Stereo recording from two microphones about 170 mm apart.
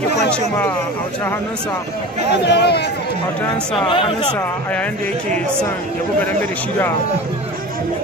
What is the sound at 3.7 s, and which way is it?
Speech, 30° left (ahead or behind).